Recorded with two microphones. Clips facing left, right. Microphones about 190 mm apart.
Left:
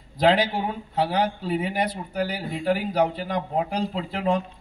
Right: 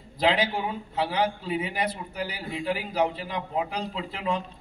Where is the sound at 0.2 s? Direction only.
45° left (ahead or behind).